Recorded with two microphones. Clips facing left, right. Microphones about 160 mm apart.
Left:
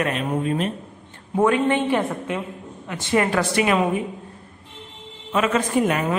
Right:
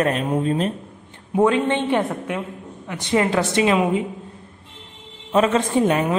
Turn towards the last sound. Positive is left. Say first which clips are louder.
# right 2 dB
turn(degrees=-25)  # may be behind; listen again after turning